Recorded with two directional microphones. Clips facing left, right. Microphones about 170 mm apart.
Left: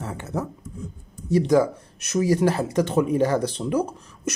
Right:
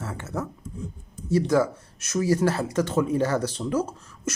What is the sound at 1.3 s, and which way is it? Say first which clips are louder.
Speech: left 3 dB; 15° left (ahead or behind).